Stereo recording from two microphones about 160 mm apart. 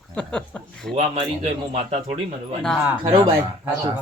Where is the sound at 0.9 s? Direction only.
40° right (ahead or behind).